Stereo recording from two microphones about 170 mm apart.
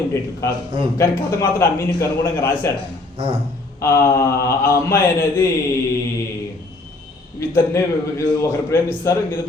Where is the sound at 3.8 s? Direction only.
15° left (ahead or behind).